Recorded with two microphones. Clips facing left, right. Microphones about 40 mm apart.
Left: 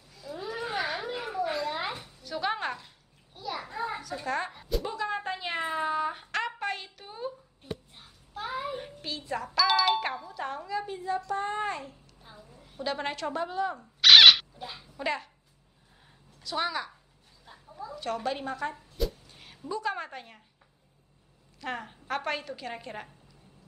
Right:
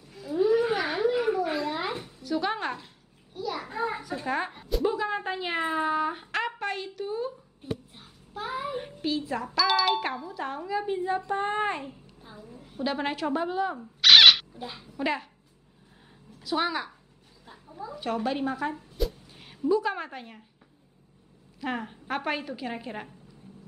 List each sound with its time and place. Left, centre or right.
0.3 s a sound: centre
3.6 s a woman's voice: centre
11.1 s child singing: right
12.2 s a woman's voice: centre
14.0 s a sound: centre
14.6 s a child's voice: centre
16.3 s a child's voice: centre
21.5 s a woman's voice: centre